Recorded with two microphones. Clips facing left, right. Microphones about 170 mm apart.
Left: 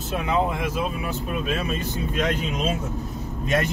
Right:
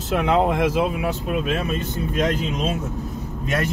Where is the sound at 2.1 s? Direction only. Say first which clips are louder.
Right 3 dB; 40° right (ahead or behind).